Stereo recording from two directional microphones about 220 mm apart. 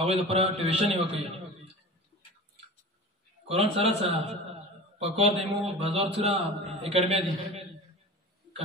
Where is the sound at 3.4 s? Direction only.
25° right (ahead or behind).